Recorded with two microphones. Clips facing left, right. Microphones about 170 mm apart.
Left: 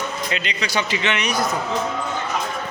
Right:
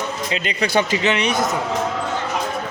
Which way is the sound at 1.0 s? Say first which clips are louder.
Right 3 dB; 30° right (ahead or behind).